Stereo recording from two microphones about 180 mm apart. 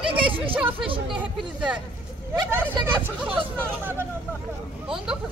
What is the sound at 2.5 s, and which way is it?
Hubbub, 10° right (ahead or behind).